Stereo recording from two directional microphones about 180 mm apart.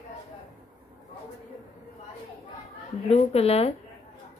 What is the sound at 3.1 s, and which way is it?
Speech, 35° left (ahead or behind).